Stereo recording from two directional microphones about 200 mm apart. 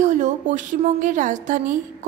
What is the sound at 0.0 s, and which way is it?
A woman's voice, 35° right (ahead or behind).